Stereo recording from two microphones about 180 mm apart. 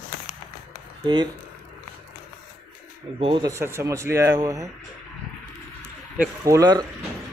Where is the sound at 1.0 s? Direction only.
25° right (ahead or behind).